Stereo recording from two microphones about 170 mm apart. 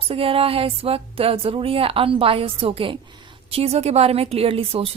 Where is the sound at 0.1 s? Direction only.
35° right (ahead or behind).